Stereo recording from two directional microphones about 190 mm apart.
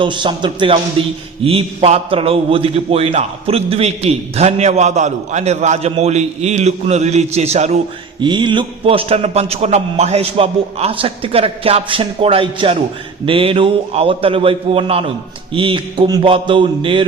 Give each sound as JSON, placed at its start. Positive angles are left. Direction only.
{"t": 0.0, "sound": "a man's voice", "side_deg": -25}
{"t": 8.2, "sound": "a man's voice", "side_deg": -25}